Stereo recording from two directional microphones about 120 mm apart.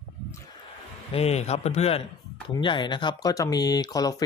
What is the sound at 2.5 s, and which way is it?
Speech, 40° left (ahead or behind).